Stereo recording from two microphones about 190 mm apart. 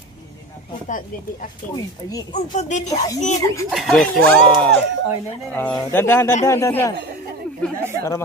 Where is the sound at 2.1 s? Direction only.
20° left (ahead or behind).